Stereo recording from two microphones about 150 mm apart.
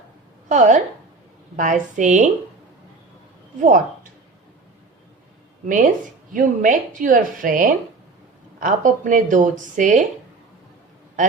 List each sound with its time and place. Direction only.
0.4 s a woman's voice: 55° right (ahead or behind)
5.6 s speech: 60° right (ahead or behind)